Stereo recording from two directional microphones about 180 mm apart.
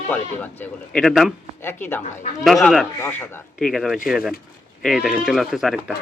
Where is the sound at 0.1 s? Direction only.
10° left (ahead or behind).